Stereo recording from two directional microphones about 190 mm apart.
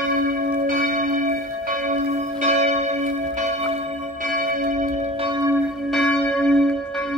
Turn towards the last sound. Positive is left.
turn(degrees=5)  # may be behind; listen again after turning